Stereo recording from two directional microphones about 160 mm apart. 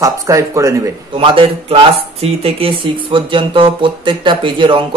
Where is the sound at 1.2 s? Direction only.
35° right (ahead or behind).